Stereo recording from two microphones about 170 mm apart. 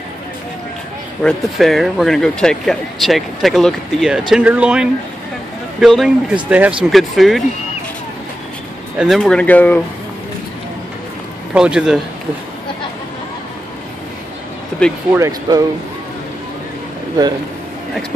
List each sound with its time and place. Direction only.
1.2 s speech: centre (ahead or behind)
8.9 s speech: centre (ahead or behind)
11.5 s speech: 5° right (ahead or behind)
14.8 s speech: 5° left (ahead or behind)
15.1 s speech: 15° right (ahead or behind)